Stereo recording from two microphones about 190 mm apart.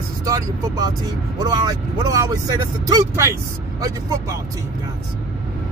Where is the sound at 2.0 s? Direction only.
20° right (ahead or behind).